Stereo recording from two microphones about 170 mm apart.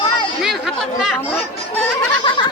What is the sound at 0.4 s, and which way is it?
Chatter, 5° right (ahead or behind).